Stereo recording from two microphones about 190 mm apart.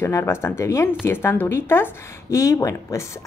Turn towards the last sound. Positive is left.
turn(degrees=15)  # may be behind; listen again after turning